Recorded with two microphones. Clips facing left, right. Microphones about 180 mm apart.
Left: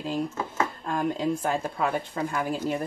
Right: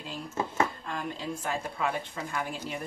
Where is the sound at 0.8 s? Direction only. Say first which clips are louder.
Left 8 dB; 45° left (ahead or behind).